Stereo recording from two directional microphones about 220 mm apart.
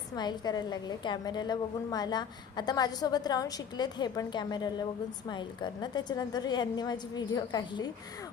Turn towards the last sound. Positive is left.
turn(degrees=20)  # may be behind; listen again after turning